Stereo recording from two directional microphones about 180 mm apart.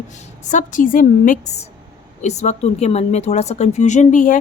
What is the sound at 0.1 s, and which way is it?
Speech, 45° left (ahead or behind).